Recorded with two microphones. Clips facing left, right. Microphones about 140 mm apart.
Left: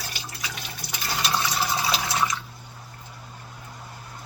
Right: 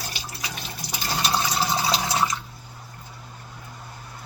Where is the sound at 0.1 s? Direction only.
25° right (ahead or behind).